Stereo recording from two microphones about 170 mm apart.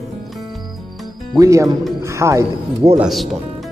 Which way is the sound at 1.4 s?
20° right (ahead or behind).